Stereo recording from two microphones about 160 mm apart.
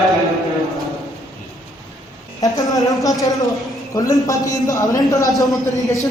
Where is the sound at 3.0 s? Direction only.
20° left (ahead or behind).